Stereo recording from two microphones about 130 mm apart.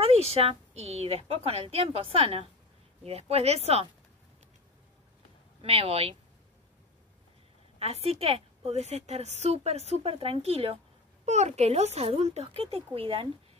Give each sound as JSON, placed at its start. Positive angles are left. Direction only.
{"t": 0.0, "sound": "a woman's voice", "side_deg": -50}
{"t": 5.6, "sound": "a woman's voice", "side_deg": -50}
{"t": 7.8, "sound": "a woman's voice", "side_deg": -50}